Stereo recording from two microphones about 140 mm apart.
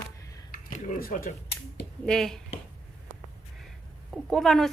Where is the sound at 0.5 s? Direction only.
85° left.